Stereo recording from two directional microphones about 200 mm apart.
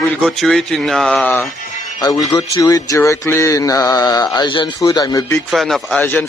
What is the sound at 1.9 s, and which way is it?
Speech, 20° left (ahead or behind).